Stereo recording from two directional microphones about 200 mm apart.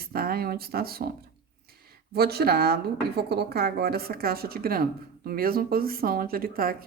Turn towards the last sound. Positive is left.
turn(degrees=-45)  # may be behind; listen again after turning